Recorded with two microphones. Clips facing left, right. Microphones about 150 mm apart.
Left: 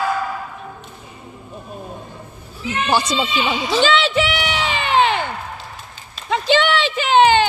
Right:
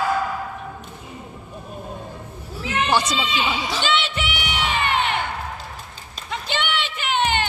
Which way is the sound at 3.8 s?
90° left.